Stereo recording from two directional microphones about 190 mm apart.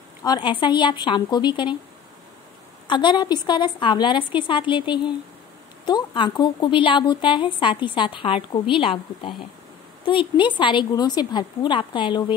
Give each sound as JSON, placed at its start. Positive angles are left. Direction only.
{"t": 0.2, "sound": "a woman's voice", "side_deg": 25}
{"t": 2.9, "sound": "a woman's voice", "side_deg": 25}